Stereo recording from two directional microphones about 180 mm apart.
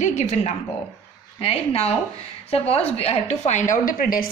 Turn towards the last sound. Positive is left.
turn(degrees=55)  # may be behind; listen again after turning